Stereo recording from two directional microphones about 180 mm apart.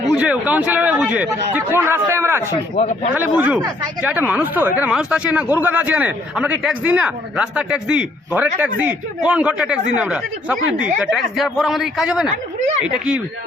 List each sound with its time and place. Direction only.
0.1 s speech: 5° right (ahead or behind)
2.7 s speech: 35° left (ahead or behind)
3.2 s speech: 10° right (ahead or behind)